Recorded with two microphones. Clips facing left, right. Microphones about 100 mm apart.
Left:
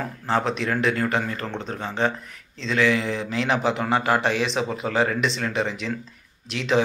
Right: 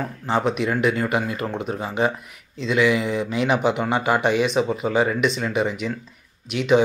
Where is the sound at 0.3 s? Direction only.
5° right (ahead or behind).